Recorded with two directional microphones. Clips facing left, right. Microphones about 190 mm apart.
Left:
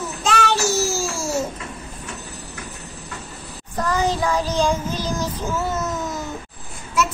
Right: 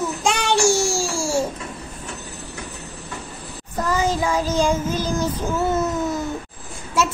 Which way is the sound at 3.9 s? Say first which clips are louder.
Even; 10° right (ahead or behind).